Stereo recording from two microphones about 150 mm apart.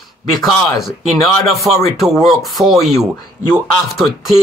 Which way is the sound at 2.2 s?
Centre (ahead or behind).